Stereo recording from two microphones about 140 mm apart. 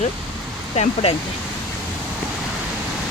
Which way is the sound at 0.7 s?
45° left (ahead or behind).